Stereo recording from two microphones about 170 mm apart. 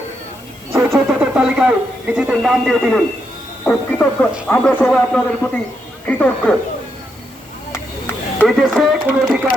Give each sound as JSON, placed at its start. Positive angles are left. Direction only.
{"t": 0.8, "sound": "speech", "side_deg": -10}
{"t": 7.7, "sound": "a sound", "side_deg": 15}
{"t": 8.4, "sound": "speech", "side_deg": 0}